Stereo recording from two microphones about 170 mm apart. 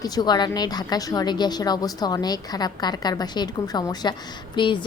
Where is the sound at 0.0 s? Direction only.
25° left (ahead or behind).